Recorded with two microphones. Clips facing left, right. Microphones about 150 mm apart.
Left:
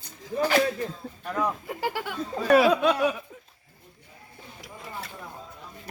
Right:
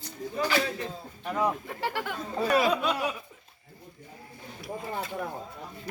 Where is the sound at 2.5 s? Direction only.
65° left (ahead or behind).